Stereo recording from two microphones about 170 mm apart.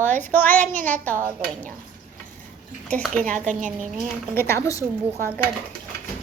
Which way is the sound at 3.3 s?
45° right (ahead or behind).